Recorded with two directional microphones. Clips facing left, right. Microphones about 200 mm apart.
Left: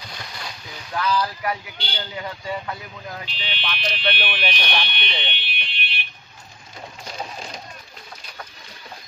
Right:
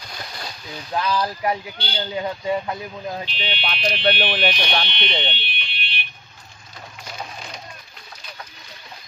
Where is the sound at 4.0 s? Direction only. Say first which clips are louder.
Right 7 dB; 40° right (ahead or behind).